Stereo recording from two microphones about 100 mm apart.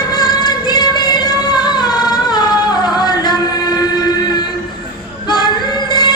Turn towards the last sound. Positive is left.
turn(degrees=45)  # may be behind; listen again after turning